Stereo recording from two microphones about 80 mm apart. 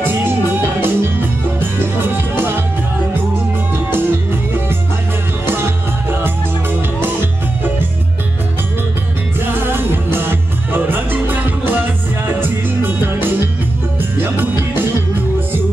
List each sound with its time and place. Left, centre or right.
0.0 s music: right
2.0 s music: right
6.2 s music: right
9.5 s music: right